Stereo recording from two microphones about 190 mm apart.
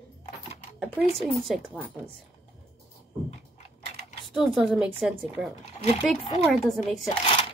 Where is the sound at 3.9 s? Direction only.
35° left (ahead or behind).